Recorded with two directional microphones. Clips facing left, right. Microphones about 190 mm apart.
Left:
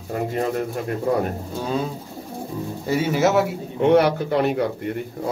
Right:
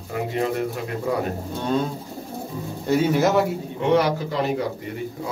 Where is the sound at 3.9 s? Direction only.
60° left (ahead or behind).